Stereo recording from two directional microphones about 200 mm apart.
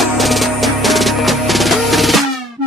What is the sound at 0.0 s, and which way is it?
Music, centre (ahead or behind).